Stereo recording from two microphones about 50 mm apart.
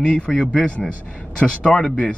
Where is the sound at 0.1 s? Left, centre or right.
Centre.